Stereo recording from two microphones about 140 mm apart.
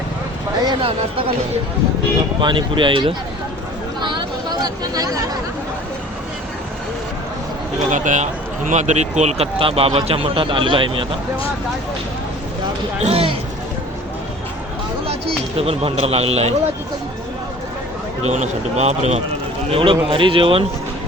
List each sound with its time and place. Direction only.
0.7 s speech: 40° right (ahead or behind)
2.4 s speech: 35° right (ahead or behind)
4.0 s chatter: 35° right (ahead or behind)
7.9 s a man's voice: 60° right (ahead or behind); by 11.0 s 35° right (ahead or behind)
13.0 s a man's voice: 45° right (ahead or behind)
15.6 s a man's voice: 45° right (ahead or behind)
18.3 s a man's voice: 55° right (ahead or behind)
19.7 s speech: 40° right (ahead or behind)